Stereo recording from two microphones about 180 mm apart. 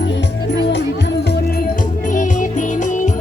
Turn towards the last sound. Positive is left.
turn(degrees=45)  # may be behind; listen again after turning